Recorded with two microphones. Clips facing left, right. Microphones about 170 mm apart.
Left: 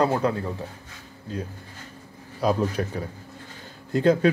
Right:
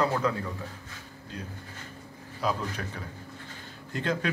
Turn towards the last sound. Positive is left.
turn(degrees=40)  # may be behind; listen again after turning